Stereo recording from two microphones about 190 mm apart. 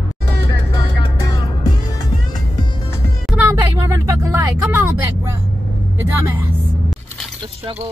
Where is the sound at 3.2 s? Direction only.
10° right (ahead or behind).